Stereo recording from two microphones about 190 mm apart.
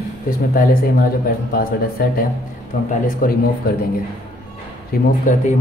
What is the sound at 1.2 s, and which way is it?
Speech, 50° left (ahead or behind).